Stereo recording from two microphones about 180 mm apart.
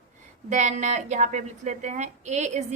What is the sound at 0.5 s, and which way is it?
A woman's voice, 40° right (ahead or behind).